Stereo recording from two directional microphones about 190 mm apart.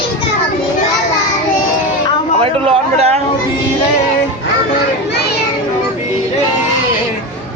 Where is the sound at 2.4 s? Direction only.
35° right (ahead or behind).